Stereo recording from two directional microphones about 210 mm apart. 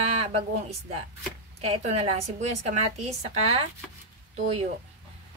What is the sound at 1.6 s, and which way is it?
Speech, 30° right (ahead or behind).